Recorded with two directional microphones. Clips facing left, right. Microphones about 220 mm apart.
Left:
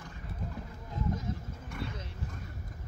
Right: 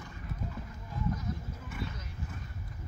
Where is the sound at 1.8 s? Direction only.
25° left (ahead or behind).